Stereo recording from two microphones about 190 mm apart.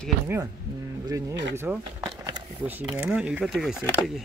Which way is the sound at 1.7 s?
5° right (ahead or behind).